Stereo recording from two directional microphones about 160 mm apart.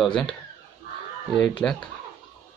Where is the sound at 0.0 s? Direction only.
5° left (ahead or behind).